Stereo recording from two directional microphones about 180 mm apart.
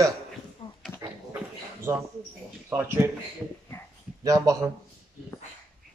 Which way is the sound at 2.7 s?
15° right (ahead or behind).